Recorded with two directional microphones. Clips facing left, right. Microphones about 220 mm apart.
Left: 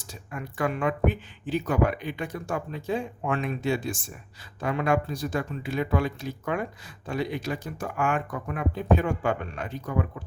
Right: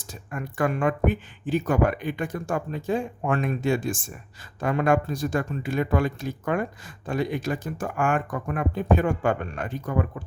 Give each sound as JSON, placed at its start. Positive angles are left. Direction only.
{"t": 0.0, "sound": "speech", "side_deg": -50}